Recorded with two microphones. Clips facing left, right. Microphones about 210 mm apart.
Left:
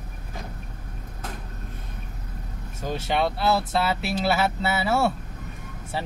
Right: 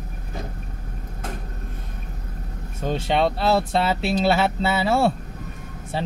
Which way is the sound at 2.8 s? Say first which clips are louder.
Right 4 dB; 25° right (ahead or behind).